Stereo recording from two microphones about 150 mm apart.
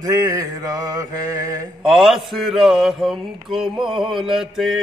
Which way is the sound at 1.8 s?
Centre (ahead or behind).